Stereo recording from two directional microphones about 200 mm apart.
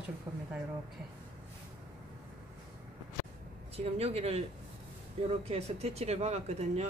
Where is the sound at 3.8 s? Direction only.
30° right (ahead or behind).